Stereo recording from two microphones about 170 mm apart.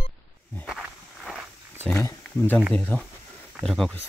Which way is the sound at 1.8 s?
15° left (ahead or behind).